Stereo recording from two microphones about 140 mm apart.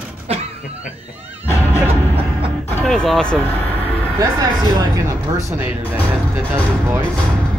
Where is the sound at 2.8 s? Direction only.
5° left (ahead or behind).